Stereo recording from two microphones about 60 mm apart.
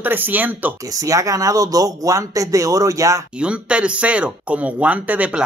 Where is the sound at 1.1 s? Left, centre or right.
Right.